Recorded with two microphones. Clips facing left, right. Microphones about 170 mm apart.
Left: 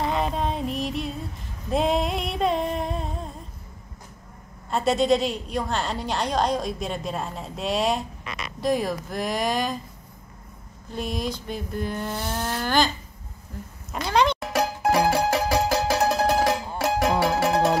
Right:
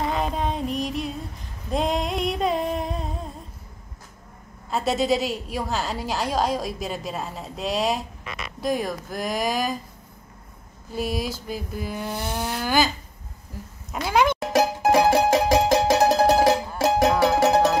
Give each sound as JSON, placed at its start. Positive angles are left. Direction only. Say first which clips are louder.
{"t": 0.0, "sound": "music", "louder": "even", "side_deg": 0}
{"t": 1.7, "sound": "a sound", "louder": "left 1 dB", "side_deg": 0}
{"t": 4.6, "sound": "a woman's voice", "louder": "left 2 dB", "side_deg": 0}
{"t": 10.9, "sound": "a sound", "louder": "right 2 dB", "side_deg": -5}
{"t": 14.0, "sound": "a woman's voice", "louder": "right 1 dB", "side_deg": -5}
{"t": 14.5, "sound": "music", "louder": "right 3 dB", "side_deg": -30}
{"t": 16.0, "sound": "music", "louder": "right 4 dB", "side_deg": -30}